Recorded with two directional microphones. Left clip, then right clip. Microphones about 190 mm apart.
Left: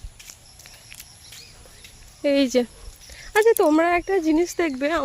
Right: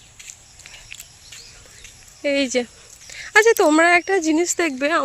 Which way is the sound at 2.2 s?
25° left (ahead or behind).